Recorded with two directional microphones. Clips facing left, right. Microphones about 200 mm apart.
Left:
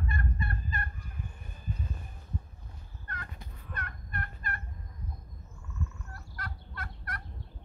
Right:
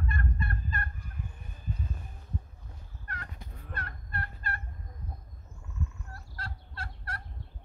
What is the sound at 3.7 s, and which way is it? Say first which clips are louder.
Fowl: even; 30° right (ahead or behind).